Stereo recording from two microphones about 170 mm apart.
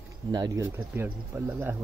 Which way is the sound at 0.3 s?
25° right (ahead or behind).